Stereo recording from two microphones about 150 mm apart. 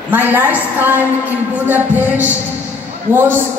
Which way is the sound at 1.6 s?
10° right (ahead or behind).